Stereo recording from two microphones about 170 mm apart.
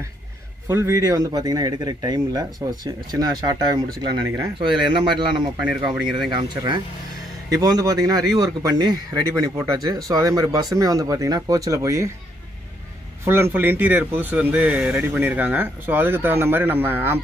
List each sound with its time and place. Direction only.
0.7 s speech: 15° right (ahead or behind)
13.2 s speech: 15° right (ahead or behind)